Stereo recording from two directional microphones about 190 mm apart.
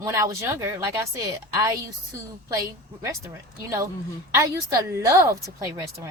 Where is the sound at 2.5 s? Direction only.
15° right (ahead or behind).